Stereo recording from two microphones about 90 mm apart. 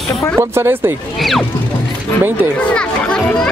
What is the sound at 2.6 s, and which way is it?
Speech, 10° left (ahead or behind).